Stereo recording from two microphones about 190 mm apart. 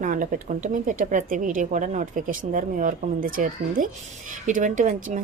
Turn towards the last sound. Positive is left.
turn(degrees=-40)  # may be behind; listen again after turning